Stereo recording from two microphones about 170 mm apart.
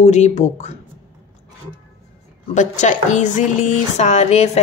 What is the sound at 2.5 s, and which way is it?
A woman's voice, 45° left (ahead or behind).